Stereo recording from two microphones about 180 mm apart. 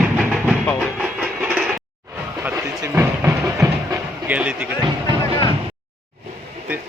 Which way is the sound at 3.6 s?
10° right (ahead or behind).